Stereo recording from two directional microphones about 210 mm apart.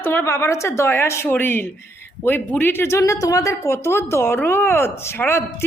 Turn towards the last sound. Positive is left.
turn(degrees=10)  # may be behind; listen again after turning